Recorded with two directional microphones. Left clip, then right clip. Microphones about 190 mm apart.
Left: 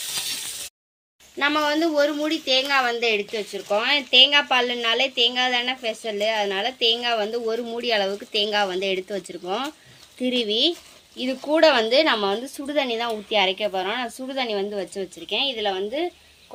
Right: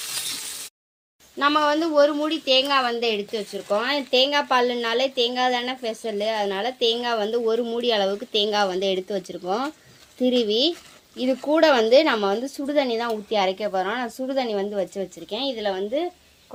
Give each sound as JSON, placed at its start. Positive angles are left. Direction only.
{"t": 1.4, "sound": "speech", "side_deg": -20}